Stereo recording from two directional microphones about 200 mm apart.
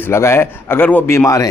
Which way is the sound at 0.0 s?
15° left (ahead or behind).